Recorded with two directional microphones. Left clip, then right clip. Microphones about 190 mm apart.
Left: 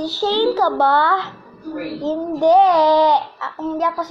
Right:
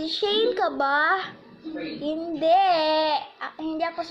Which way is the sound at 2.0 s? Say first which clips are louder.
Left 7 dB; 15° right (ahead or behind).